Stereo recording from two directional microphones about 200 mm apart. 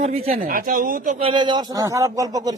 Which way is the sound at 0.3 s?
45° right (ahead or behind).